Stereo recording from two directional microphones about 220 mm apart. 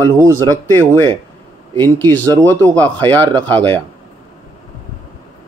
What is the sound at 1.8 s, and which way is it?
A man's voice, 10° left (ahead or behind).